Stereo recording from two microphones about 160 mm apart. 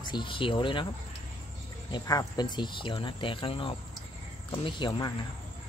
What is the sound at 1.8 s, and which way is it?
Speech, 25° left (ahead or behind).